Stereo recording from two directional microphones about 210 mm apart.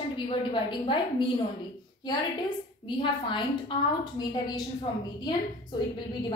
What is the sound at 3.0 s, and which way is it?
A woman's voice, 25° left (ahead or behind).